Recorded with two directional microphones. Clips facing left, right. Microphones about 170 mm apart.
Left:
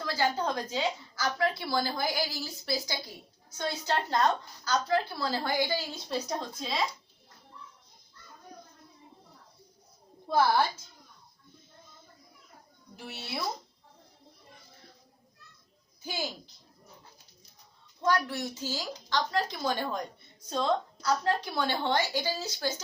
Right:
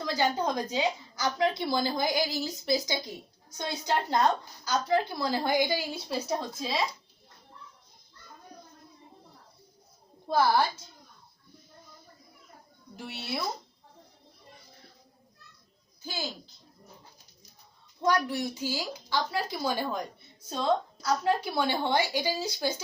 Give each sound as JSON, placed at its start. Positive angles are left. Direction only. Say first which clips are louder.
{"t": 0.0, "sound": "a woman's voice", "louder": "right 2 dB", "side_deg": -15}
{"t": 13.0, "sound": "speech", "louder": "right 3 dB", "side_deg": 0}
{"t": 18.0, "sound": "a woman's voice", "louder": "right 2 dB", "side_deg": -15}